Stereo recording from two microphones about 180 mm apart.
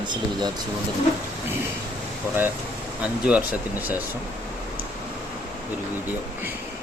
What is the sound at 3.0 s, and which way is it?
Speech, 5° right (ahead or behind).